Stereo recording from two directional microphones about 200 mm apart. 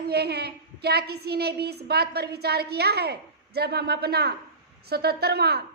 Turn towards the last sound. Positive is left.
turn(degrees=-55)  # may be behind; listen again after turning